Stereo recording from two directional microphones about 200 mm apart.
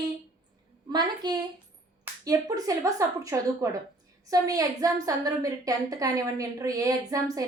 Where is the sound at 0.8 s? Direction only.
20° right (ahead or behind).